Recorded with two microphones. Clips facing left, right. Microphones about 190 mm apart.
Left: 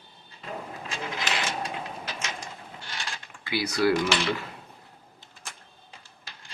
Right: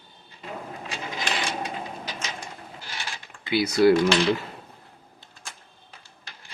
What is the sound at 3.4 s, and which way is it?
Speech, 20° right (ahead or behind).